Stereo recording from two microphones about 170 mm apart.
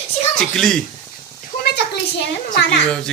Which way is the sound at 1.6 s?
70° left (ahead or behind).